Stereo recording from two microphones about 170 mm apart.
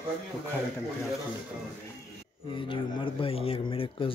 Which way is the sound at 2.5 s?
30° left (ahead or behind).